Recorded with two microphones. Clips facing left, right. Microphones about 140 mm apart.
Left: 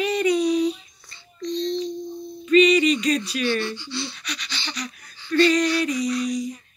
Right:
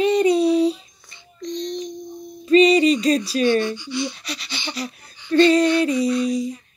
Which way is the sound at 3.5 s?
15° right (ahead or behind).